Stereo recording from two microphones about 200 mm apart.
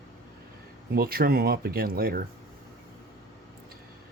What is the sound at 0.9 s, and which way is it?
Speech, 50° right (ahead or behind).